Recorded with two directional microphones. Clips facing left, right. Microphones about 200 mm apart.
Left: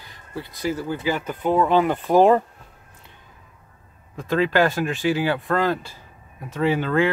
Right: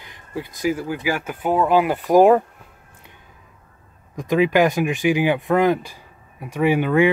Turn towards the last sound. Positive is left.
turn(degrees=-15)  # may be behind; listen again after turning